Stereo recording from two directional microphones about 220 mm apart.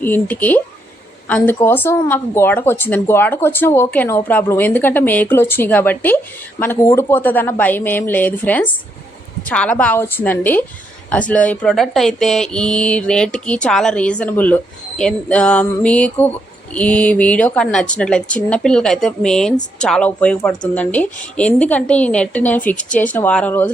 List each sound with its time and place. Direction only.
0.0 s speech: 10° left (ahead or behind)
22.7 s speech: 35° left (ahead or behind)
23.0 s speech: 10° left (ahead or behind)